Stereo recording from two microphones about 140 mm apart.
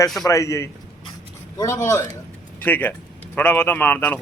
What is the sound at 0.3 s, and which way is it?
A man's voice, 20° left (ahead or behind).